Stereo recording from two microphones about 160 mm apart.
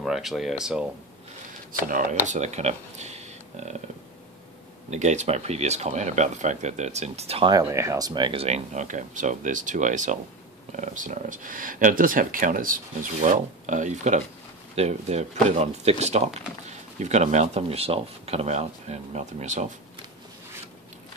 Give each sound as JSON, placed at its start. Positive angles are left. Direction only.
{"t": 0.0, "sound": "speech", "side_deg": 0}
{"t": 1.7, "sound": "speech", "side_deg": -55}
{"t": 4.9, "sound": "speech", "side_deg": -45}
{"t": 7.5, "sound": "speech", "side_deg": -20}